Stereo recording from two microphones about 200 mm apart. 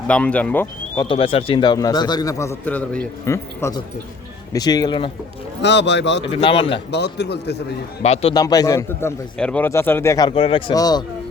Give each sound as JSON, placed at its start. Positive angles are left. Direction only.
{"t": 0.1, "sound": "a man's voice", "side_deg": 5}
{"t": 1.0, "sound": "a man's voice", "side_deg": 25}
{"t": 5.6, "sound": "speech", "side_deg": 60}
{"t": 6.3, "sound": "a man's voice", "side_deg": 30}
{"t": 6.9, "sound": "speech", "side_deg": 55}
{"t": 8.0, "sound": "a man's voice", "side_deg": 30}
{"t": 8.4, "sound": "a man's voice", "side_deg": 20}